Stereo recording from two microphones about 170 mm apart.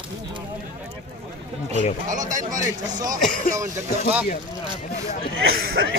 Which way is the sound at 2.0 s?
50° right (ahead or behind).